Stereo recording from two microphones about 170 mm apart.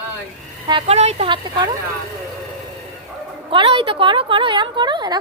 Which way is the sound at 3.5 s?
30° right (ahead or behind).